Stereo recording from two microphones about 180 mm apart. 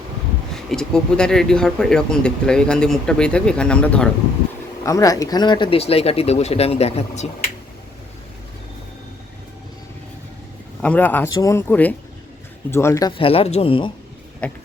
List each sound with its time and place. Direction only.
0.5 s speech: 5° left (ahead or behind)
4.9 s speech: 20° left (ahead or behind); by 7.5 s 35° left (ahead or behind)
10.8 s speech: 10° left (ahead or behind); by 13.9 s 30° left (ahead or behind)
14.4 s speech: 5° left (ahead or behind)